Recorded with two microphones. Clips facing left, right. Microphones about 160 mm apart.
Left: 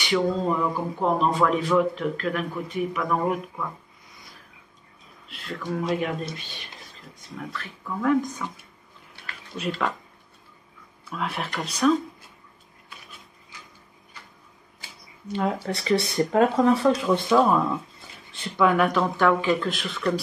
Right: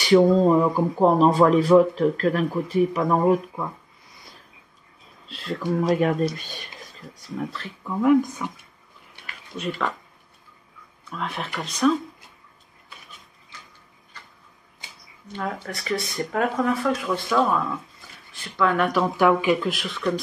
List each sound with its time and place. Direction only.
0.0 s speech: 35° right (ahead or behind)
5.3 s speech: 30° right (ahead or behind)
5.8 s speech: 45° right (ahead or behind)
7.2 s speech: 30° right (ahead or behind)
8.0 s speech: 15° right (ahead or behind)
11.1 s speech: centre (ahead or behind)
15.3 s speech: 25° left (ahead or behind)
18.8 s speech: 5° right (ahead or behind)
19.7 s speech: centre (ahead or behind)